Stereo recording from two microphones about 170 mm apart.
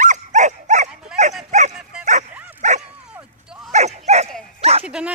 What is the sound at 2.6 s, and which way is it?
Dog, 45° right (ahead or behind).